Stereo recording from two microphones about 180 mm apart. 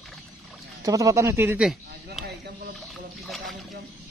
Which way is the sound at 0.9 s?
20° right (ahead or behind).